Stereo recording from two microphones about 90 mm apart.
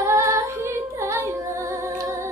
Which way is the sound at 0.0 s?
35° right (ahead or behind).